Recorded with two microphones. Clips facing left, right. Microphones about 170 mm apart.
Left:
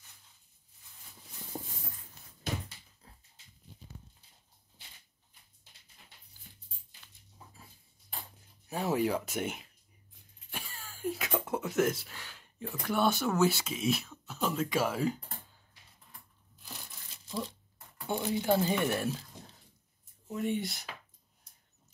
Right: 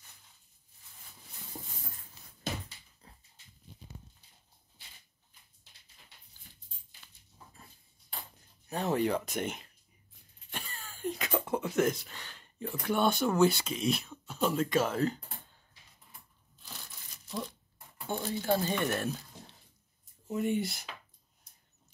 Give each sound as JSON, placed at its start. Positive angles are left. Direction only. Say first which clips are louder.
{"t": 1.5, "sound": "clip-clop", "louder": "left 5 dB", "side_deg": 50}
{"t": 3.0, "sound": "dog", "louder": "right 2 dB", "side_deg": 5}
{"t": 8.6, "sound": "speech", "louder": "even", "side_deg": 5}
{"t": 18.0, "sound": "speech", "louder": "left 2 dB", "side_deg": 15}
{"t": 20.2, "sound": "speech", "louder": "right 2 dB", "side_deg": 0}